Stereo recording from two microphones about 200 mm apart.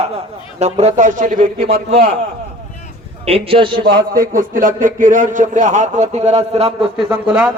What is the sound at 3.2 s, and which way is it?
Speech, 30° right (ahead or behind).